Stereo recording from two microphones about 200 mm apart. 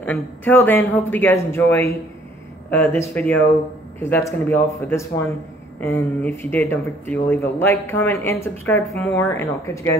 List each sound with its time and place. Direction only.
0.0 s speech: 10° left (ahead or behind)